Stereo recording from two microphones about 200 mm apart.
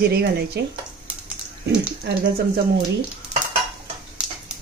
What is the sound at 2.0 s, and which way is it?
Speech, 50° right (ahead or behind).